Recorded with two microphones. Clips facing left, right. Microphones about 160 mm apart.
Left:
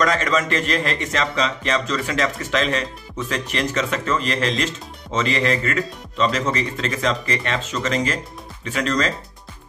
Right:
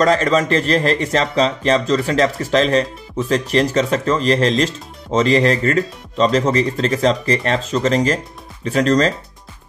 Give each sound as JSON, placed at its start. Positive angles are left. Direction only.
{"t": 0.0, "sound": "speech", "side_deg": -30}